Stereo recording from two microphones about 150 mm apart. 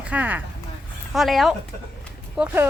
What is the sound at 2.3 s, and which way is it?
Speech, 10° right (ahead or behind).